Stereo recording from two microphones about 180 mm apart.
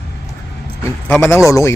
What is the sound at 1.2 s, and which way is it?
Speech, 15° left (ahead or behind).